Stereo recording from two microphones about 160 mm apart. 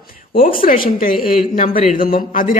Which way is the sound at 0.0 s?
65° left (ahead or behind).